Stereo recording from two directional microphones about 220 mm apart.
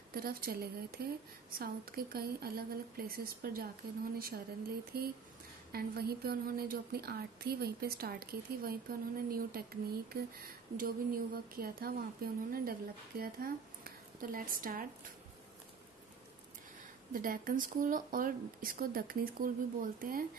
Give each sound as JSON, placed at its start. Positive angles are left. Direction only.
{"t": 0.1, "sound": "speech", "side_deg": -45}
{"t": 17.1, "sound": "speech", "side_deg": -40}